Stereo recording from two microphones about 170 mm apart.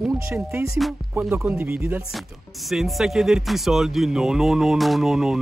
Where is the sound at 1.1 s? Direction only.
10° right (ahead or behind).